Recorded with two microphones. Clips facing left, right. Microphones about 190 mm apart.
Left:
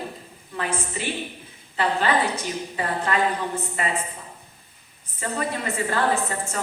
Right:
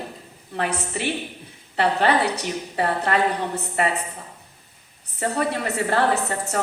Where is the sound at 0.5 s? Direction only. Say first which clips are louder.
Right 3 dB; 65° right (ahead or behind).